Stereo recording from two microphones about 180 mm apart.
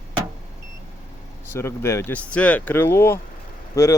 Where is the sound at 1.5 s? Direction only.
15° left (ahead or behind).